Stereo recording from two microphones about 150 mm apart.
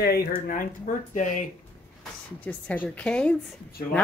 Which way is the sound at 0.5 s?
65° left (ahead or behind).